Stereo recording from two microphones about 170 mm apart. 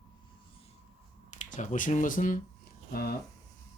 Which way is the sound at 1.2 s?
45° left (ahead or behind).